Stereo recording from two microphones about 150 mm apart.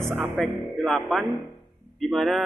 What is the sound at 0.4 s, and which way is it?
Speech, 5° left (ahead or behind).